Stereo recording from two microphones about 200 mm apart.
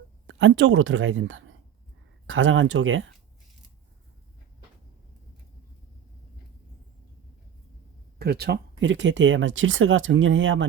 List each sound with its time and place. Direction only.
0.3 s speech: 70° right (ahead or behind)
8.2 s speech: 50° right (ahead or behind)
8.8 s speech: 65° right (ahead or behind)